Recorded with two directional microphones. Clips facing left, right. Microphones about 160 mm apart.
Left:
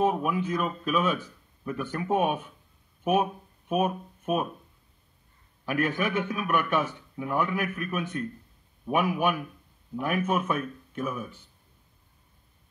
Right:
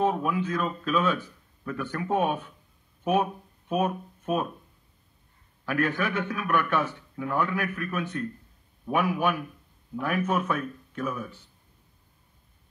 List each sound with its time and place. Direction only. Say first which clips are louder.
0.0 s speech: even; 15° left (ahead or behind)
5.7 s speech: even; 15° left (ahead or behind)